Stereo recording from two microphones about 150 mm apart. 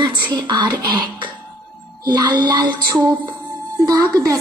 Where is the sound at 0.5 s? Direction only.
30° right (ahead or behind).